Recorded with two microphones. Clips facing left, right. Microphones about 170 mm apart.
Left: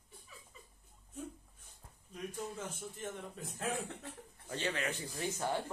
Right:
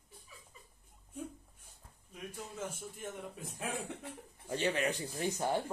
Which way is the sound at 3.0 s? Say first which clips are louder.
Even; 10° right (ahead or behind).